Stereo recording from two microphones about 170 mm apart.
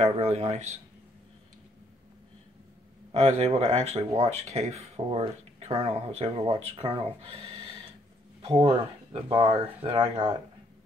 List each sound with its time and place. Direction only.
0.0 s speech: 40° right (ahead or behind)
3.1 s speech: 40° right (ahead or behind)
8.4 s a sound: 35° right (ahead or behind)
9.1 s speech: 30° right (ahead or behind)